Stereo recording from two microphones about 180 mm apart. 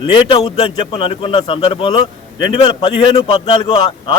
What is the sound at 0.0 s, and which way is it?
A man's voice, 30° left (ahead or behind).